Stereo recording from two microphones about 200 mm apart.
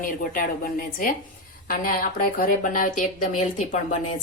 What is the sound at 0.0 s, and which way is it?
Speech, 45° left (ahead or behind).